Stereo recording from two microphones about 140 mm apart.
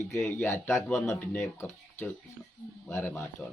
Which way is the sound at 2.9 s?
15° left (ahead or behind).